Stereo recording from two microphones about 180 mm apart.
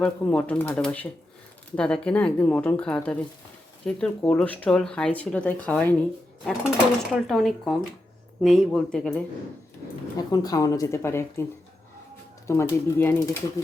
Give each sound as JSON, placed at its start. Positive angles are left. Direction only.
{"t": 0.0, "sound": "speech", "side_deg": 10}
{"t": 10.2, "sound": "speech", "side_deg": 20}
{"t": 12.5, "sound": "speech", "side_deg": 15}